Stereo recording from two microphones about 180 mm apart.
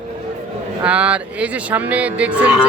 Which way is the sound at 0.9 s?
5° right (ahead or behind).